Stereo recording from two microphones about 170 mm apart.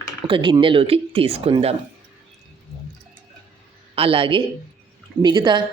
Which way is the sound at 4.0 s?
30° right (ahead or behind).